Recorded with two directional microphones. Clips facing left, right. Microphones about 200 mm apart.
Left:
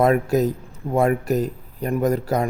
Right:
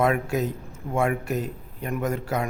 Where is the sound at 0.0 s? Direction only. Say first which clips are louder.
Left 6 dB; 40° left (ahead or behind).